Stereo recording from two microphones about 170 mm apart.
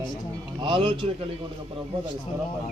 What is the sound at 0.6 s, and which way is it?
Speech, 30° right (ahead or behind).